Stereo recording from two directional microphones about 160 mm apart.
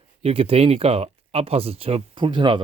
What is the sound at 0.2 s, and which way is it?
Speech, 40° right (ahead or behind).